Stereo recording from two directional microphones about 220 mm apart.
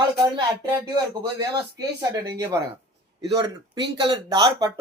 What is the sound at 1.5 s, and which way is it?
Speech, 15° right (ahead or behind).